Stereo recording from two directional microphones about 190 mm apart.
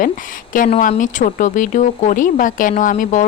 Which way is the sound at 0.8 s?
45° left (ahead or behind).